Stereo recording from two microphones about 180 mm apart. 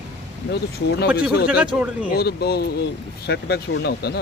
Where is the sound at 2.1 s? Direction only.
60° left (ahead or behind).